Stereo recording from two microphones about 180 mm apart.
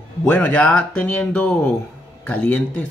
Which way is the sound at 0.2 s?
10° left (ahead or behind).